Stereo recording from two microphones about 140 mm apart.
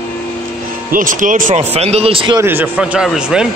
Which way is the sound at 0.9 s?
70° right (ahead or behind).